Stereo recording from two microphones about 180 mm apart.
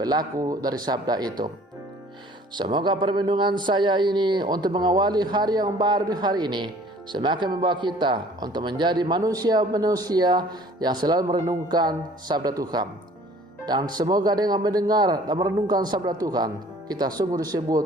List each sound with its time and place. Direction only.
0.0 s speech: 20° right (ahead or behind)
2.7 s speech: 25° right (ahead or behind)